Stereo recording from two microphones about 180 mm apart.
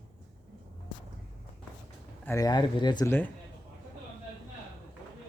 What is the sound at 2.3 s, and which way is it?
Speech, 20° left (ahead or behind).